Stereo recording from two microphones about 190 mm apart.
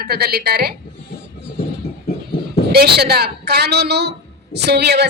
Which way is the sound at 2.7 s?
60° right (ahead or behind).